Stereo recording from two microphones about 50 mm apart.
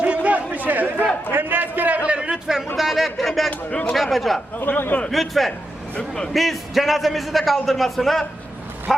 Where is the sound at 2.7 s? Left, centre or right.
Centre.